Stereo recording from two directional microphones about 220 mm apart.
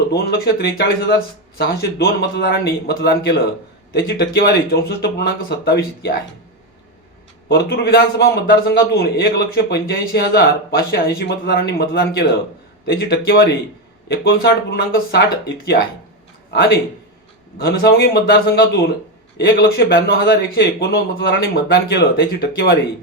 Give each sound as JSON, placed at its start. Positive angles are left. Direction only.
{"t": 0.1, "sound": "a man's voice", "side_deg": 45}
{"t": 7.4, "sound": "a man's voice", "side_deg": 45}
{"t": 16.5, "sound": "a man's voice", "side_deg": 50}